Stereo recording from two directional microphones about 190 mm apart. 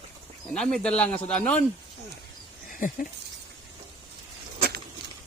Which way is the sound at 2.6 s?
45° left (ahead or behind).